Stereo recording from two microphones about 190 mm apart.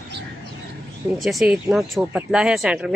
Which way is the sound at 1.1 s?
Centre (ahead or behind).